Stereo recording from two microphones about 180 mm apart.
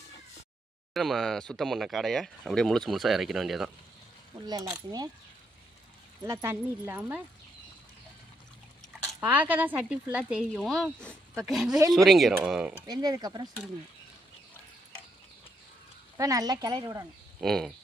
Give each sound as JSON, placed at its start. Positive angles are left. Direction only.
{"t": 0.9, "sound": "speech", "side_deg": 0}
{"t": 4.4, "sound": "speech", "side_deg": -20}
{"t": 6.2, "sound": "speech", "side_deg": -15}
{"t": 9.2, "sound": "speech", "side_deg": -10}
{"t": 12.9, "sound": "speech", "side_deg": -20}
{"t": 16.1, "sound": "speech", "side_deg": -20}
{"t": 17.4, "sound": "speech", "side_deg": 0}